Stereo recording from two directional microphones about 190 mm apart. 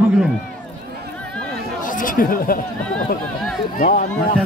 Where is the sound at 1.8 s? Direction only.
45° left (ahead or behind).